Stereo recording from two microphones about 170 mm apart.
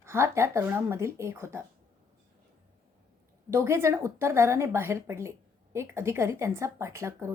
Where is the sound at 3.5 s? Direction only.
15° right (ahead or behind).